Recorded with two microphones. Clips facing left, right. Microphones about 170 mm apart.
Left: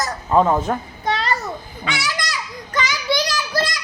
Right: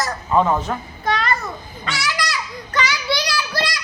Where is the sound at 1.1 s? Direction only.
30° left (ahead or behind).